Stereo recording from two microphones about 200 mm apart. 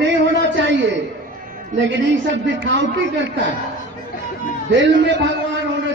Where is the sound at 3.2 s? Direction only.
65° right (ahead or behind).